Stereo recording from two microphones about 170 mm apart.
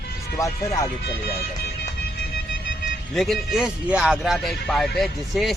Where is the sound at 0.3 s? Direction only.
20° left (ahead or behind).